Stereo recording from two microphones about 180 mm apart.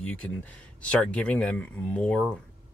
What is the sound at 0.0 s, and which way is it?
Speech, 5° left (ahead or behind).